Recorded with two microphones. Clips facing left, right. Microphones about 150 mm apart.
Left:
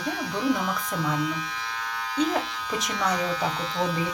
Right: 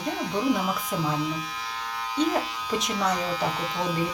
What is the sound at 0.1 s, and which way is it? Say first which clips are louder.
Speech: right 1 dB; 10° right (ahead or behind).